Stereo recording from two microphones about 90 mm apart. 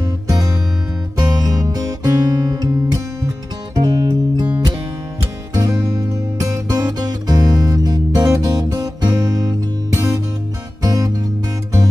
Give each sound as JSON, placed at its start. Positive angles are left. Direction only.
{"t": 0.0, "sound": "music", "side_deg": -40}
{"t": 1.1, "sound": "guitar", "side_deg": -45}
{"t": 3.7, "sound": "music", "side_deg": -45}